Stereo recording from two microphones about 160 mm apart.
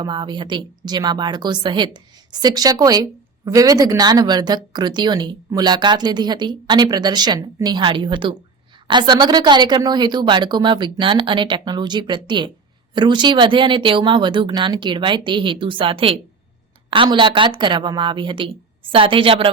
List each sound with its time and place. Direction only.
0.0 s a woman's voice: 30° right (ahead or behind)